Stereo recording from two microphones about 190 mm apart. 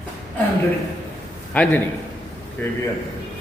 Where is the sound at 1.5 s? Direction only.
10° left (ahead or behind).